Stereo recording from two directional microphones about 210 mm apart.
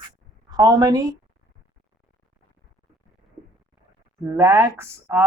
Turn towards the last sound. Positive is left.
turn(degrees=-10)  # may be behind; listen again after turning